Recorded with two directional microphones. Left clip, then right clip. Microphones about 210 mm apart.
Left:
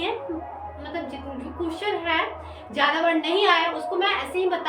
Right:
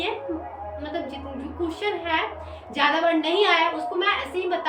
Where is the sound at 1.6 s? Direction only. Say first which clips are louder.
Left 1 dB; 20° right (ahead or behind).